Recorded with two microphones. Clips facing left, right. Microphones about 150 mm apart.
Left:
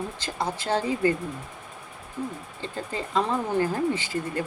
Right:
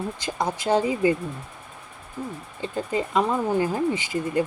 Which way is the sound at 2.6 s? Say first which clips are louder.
Right 7 dB; 15° right (ahead or behind).